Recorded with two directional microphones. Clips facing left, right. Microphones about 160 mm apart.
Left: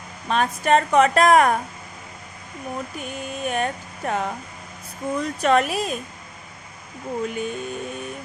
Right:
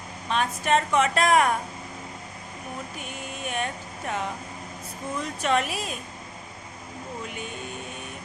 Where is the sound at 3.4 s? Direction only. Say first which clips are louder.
Left 6 dB; 45° left (ahead or behind).